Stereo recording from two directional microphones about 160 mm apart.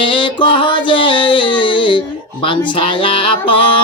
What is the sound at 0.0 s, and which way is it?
Music, 30° left (ahead or behind).